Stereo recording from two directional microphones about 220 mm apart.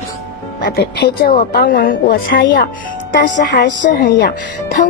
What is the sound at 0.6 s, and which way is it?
Speech, 50° left (ahead or behind).